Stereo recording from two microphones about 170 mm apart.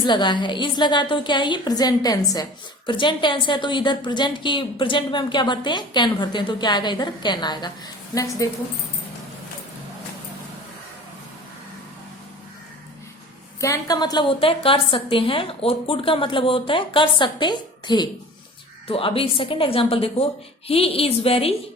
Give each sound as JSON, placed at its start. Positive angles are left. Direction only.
{"t": 0.0, "sound": "a woman's voice", "side_deg": 25}
{"t": 13.6, "sound": "a woman's voice", "side_deg": 20}